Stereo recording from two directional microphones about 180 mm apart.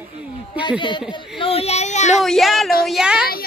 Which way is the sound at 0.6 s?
25° left (ahead or behind).